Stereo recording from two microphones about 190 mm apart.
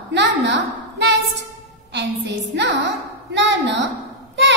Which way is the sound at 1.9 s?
65° right (ahead or behind).